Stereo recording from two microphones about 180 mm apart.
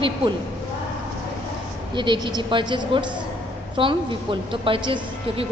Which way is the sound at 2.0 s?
25° right (ahead or behind).